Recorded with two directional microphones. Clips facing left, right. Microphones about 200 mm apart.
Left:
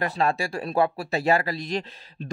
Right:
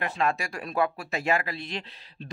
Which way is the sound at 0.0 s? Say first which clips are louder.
Left 3 dB; 35° left (ahead or behind).